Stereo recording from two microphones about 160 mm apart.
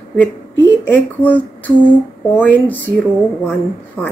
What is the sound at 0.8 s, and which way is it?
A woman's voice, 10° left (ahead or behind).